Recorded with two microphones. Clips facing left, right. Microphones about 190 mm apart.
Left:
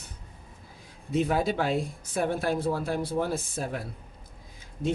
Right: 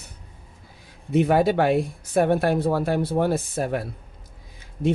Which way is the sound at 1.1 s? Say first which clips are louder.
Right 7 dB; 65° right (ahead or behind).